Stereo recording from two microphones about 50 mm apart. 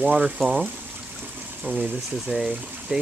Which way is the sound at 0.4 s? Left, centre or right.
Centre.